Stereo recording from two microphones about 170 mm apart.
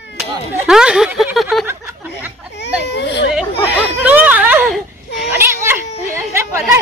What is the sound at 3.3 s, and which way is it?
Speech, 5° right (ahead or behind).